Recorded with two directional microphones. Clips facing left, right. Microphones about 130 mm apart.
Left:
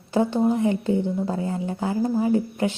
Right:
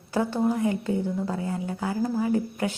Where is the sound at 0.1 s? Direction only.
20° left (ahead or behind).